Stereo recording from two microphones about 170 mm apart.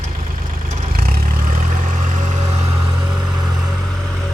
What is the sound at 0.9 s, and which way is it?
Vehicle, 60° right (ahead or behind).